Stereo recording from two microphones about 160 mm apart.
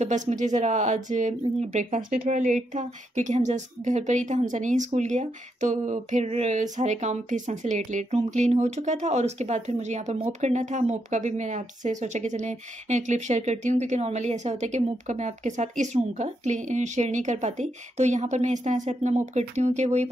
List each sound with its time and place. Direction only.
0.0 s speech: 45° right (ahead or behind)